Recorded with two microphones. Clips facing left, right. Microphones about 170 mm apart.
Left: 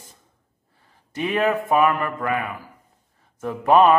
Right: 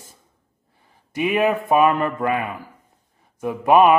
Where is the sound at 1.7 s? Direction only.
25° right (ahead or behind).